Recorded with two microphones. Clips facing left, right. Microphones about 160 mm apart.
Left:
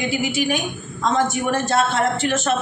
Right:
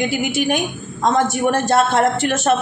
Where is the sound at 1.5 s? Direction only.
45° right (ahead or behind).